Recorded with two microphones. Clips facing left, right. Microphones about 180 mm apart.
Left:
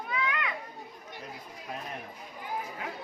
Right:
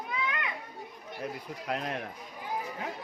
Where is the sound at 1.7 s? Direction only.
85° right.